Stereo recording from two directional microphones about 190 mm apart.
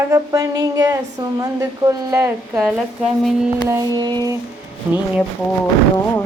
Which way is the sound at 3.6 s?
20° right (ahead or behind).